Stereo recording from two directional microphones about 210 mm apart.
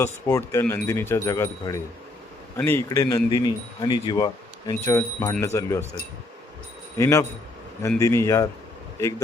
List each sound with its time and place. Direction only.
0.0 s speech: 15° left (ahead or behind)
7.0 s speech: 15° left (ahead or behind)